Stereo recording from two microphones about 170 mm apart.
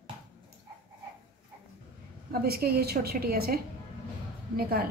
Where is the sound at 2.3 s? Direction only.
65° right (ahead or behind).